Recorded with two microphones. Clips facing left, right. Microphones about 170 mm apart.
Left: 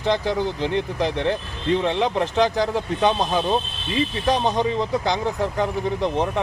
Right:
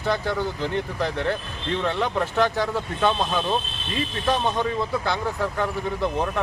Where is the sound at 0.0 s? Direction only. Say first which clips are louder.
Left 3 dB; 20° left (ahead or behind).